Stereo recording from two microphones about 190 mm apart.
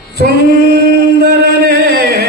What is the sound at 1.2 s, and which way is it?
Music, 55° right (ahead or behind).